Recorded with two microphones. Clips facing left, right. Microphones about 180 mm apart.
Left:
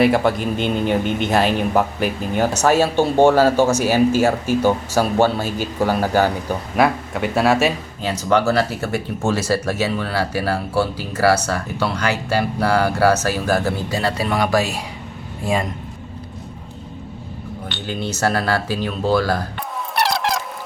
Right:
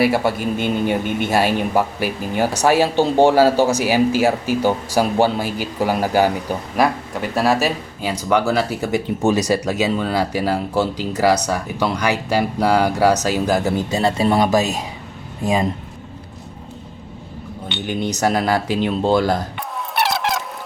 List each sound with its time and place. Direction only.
0.0 s speech: 5° right (ahead or behind)
6.7 s speech: centre (ahead or behind)
8.0 s a man's voice: 10° right (ahead or behind)
17.8 s speech: 15° right (ahead or behind)
20.0 s a sound: centre (ahead or behind)